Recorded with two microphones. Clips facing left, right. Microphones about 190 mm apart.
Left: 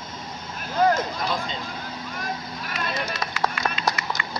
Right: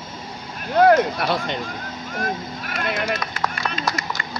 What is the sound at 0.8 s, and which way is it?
Speech, 70° right (ahead or behind).